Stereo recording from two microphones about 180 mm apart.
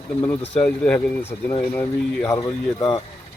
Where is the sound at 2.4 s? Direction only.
25° left (ahead or behind).